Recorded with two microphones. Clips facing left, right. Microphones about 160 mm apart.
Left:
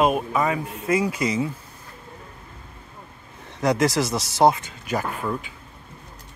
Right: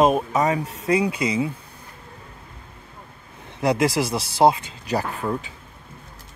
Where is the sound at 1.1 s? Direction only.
20° right (ahead or behind).